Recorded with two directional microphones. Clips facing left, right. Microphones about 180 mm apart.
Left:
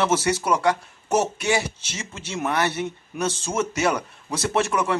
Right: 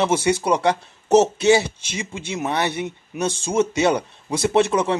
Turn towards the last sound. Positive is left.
turn(degrees=-20)  # may be behind; listen again after turning